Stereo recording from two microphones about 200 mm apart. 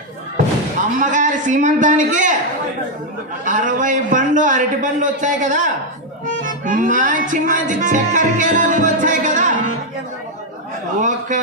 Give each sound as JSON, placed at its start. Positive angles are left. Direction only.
{"t": 0.9, "sound": "a man's voice", "side_deg": -40}
{"t": 3.4, "sound": "a man's voice", "side_deg": -40}
{"t": 6.2, "sound": "music", "side_deg": -40}
{"t": 11.0, "sound": "a man's voice", "side_deg": -40}